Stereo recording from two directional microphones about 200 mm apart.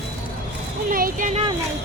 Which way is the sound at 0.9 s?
45° right (ahead or behind).